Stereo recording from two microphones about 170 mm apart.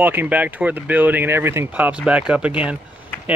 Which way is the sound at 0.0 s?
10° right (ahead or behind).